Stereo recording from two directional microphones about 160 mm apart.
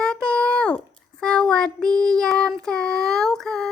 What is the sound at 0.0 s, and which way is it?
Child singing, 5° left (ahead or behind).